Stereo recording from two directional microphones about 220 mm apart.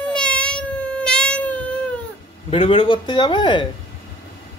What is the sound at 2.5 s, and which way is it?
Speech, 25° left (ahead or behind).